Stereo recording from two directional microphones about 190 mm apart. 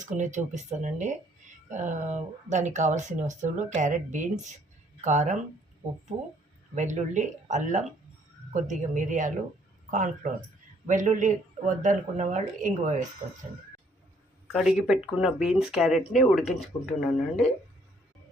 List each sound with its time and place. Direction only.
0.0 s speech: 40° right (ahead or behind)
14.5 s speech: centre (ahead or behind)